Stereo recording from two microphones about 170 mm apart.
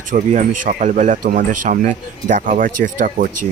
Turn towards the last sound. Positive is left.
turn(degrees=-55)  # may be behind; listen again after turning